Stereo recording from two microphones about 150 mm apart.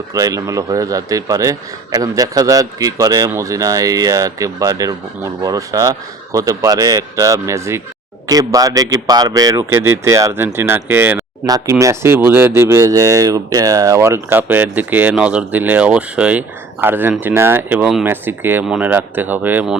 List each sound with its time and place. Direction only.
0.1 s a man's voice: 20° right (ahead or behind)
11.4 s speech: 25° right (ahead or behind); by 19.8 s 10° right (ahead or behind)